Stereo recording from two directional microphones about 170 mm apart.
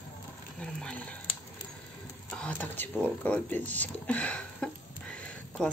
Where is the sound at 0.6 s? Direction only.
5° left (ahead or behind).